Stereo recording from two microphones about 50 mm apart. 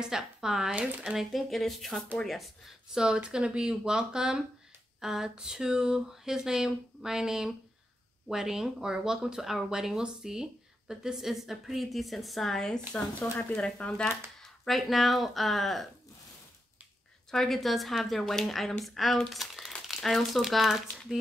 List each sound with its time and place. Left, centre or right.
0.0 s speech: centre
2.9 s speech: centre
13.6 s speech: left
14.7 s speech: centre
17.3 s speech: centre